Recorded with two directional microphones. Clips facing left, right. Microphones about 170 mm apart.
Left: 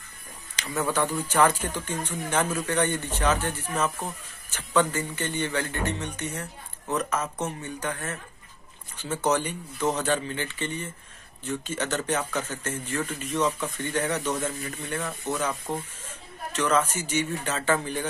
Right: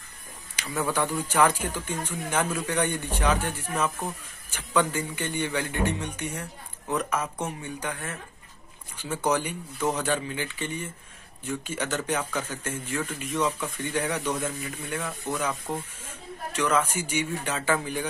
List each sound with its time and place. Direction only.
0.6 s a man's voice: 10° right (ahead or behind)